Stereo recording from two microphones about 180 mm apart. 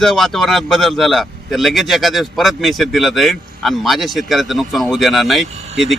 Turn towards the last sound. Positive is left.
turn(degrees=0)  # may be behind; listen again after turning